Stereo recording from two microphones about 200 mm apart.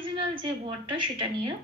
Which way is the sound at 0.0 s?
25° right (ahead or behind).